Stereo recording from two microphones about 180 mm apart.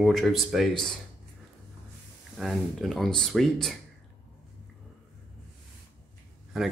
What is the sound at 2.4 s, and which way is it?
Speech, centre (ahead or behind).